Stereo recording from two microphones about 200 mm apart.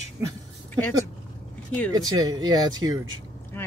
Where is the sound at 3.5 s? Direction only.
10° left (ahead or behind).